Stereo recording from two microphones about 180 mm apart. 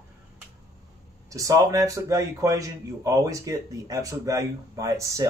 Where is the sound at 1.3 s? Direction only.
20° right (ahead or behind).